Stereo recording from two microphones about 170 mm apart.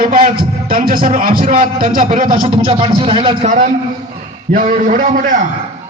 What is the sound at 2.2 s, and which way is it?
A man's voice, 30° right (ahead or behind).